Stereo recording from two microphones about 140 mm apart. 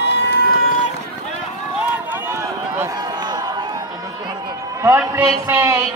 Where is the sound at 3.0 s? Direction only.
30° right (ahead or behind).